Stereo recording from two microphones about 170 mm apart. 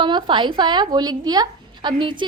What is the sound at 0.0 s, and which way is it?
A woman's voice, 25° right (ahead or behind).